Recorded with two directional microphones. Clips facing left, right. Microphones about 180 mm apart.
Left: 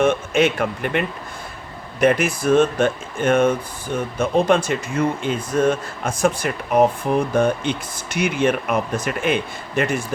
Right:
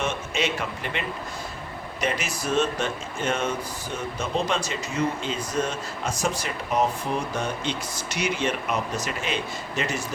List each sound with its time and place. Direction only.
0.0 s speech: 55° left (ahead or behind)